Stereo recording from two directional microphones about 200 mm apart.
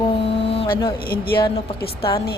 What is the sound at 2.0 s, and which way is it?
Speech, 25° left (ahead or behind).